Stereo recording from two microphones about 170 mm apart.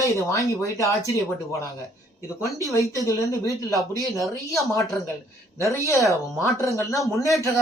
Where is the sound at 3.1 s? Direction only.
20° left (ahead or behind).